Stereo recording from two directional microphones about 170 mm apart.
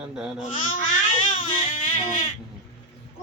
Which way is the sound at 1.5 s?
40° left (ahead or behind).